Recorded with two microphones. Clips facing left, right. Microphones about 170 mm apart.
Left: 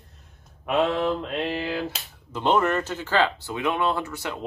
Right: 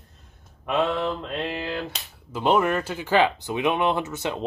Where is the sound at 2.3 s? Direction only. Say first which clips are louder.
Right 1 dB; 10° right (ahead or behind).